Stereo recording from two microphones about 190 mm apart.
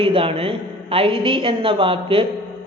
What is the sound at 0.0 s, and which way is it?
Speech, 30° right (ahead or behind).